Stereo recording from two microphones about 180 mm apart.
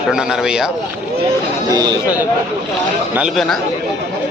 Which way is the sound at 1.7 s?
20° right (ahead or behind).